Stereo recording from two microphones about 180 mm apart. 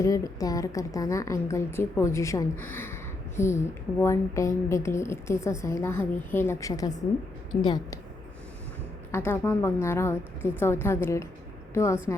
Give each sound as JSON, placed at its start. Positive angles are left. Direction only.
{"t": 0.0, "sound": "a woman's voice", "side_deg": 20}
{"t": 9.1, "sound": "a woman's voice", "side_deg": 15}